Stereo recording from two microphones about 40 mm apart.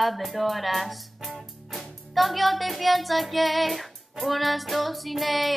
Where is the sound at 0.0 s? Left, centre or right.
Centre.